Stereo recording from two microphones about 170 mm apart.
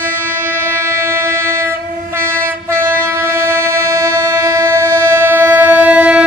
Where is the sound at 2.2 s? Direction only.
10° right (ahead or behind).